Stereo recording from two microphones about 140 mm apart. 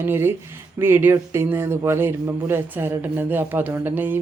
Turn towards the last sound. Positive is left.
turn(degrees=-15)  # may be behind; listen again after turning